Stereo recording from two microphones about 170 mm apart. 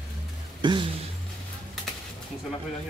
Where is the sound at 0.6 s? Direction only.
30° right (ahead or behind).